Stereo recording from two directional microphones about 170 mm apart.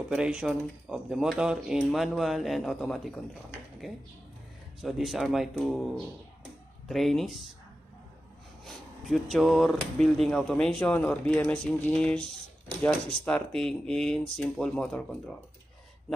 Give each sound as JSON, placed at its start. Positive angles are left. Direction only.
{"t": 0.1, "sound": "speech", "side_deg": -5}
{"t": 4.8, "sound": "speech", "side_deg": 0}
{"t": 6.9, "sound": "speech", "side_deg": 0}
{"t": 8.6, "sound": "speech", "side_deg": 0}